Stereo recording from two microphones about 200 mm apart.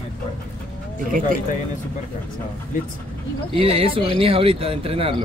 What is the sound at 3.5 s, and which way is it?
Speech, 30° right (ahead or behind).